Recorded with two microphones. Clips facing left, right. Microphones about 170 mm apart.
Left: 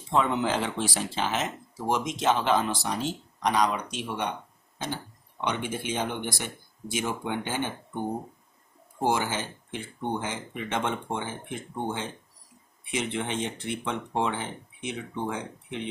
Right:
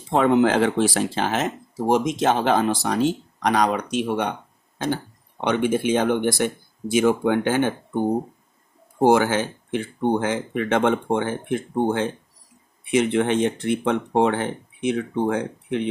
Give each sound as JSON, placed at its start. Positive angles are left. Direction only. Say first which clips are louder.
{"t": 0.1, "sound": "speech", "louder": "right 8 dB", "side_deg": -65}
{"t": 1.8, "sound": "speech", "louder": "right 8 dB", "side_deg": -45}